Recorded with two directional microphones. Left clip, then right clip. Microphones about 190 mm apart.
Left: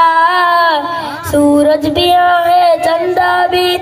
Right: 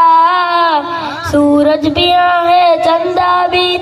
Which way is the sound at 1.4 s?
15° right (ahead or behind).